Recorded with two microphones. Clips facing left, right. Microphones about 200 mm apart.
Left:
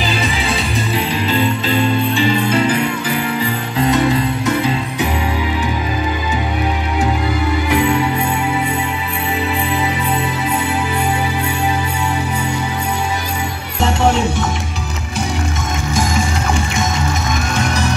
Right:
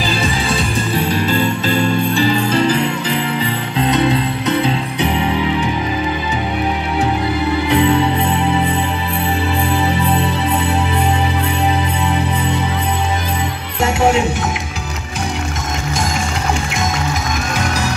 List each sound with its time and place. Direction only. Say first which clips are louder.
0.9 s music: right 2 dB; 45° right (ahead or behind)
2.1 s jingle bell: even; 35° right (ahead or behind)
7.7 s music: right 2 dB; 25° right (ahead or behind)